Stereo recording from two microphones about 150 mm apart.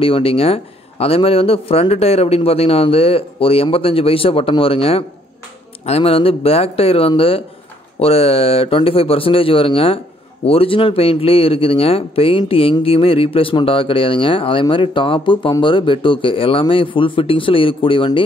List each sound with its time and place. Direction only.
0.0 s speech: 40° left (ahead or behind)